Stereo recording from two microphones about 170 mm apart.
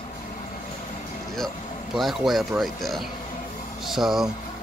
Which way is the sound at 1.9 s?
Centre (ahead or behind).